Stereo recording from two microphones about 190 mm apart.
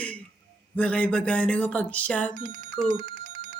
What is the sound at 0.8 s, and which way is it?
Speech, 5° left (ahead or behind).